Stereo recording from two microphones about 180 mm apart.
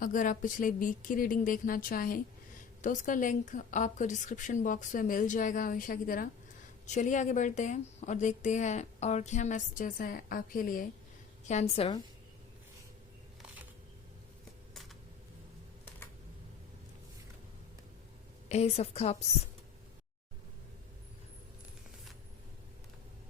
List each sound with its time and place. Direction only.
0.0 s a woman's voice: 45° left (ahead or behind)
11.4 s a woman's voice: 40° left (ahead or behind)
18.4 s a woman's voice: 35° left (ahead or behind)